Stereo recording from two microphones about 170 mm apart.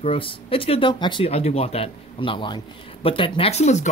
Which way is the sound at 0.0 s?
30° left (ahead or behind).